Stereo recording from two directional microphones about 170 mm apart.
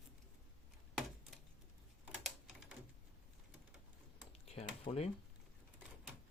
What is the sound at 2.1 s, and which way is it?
Typing, 5° right (ahead or behind).